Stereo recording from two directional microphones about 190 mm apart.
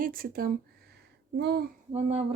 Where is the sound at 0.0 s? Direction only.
50° right (ahead or behind).